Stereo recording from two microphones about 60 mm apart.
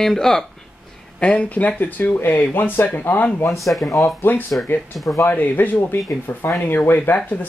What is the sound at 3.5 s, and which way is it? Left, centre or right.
Speech, centre.